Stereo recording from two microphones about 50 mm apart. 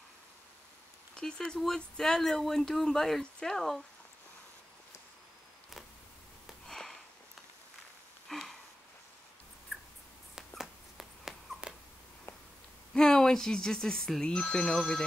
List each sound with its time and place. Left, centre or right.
1.1 s speech: centre
6.7 s sniff: centre
8.3 s sniff: centre
10.6 s dog: centre
12.9 s speech: centre